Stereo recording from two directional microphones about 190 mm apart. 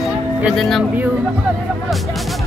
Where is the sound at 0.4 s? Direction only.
Centre (ahead or behind).